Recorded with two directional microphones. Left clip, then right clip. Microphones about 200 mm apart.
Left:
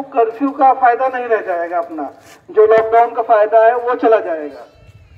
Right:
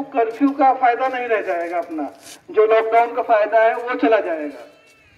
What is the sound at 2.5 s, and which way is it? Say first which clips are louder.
A man's voice: left 5 dB; 15° right (ahead or behind).